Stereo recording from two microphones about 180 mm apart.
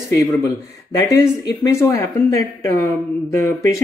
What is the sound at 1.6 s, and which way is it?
Speech, 15° left (ahead or behind).